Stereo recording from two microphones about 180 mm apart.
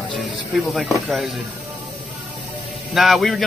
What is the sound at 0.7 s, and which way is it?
Speech, centre (ahead or behind).